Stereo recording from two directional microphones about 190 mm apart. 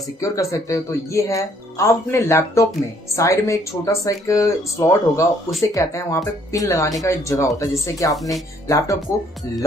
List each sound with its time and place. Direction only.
0.2 s speech: 15° left (ahead or behind)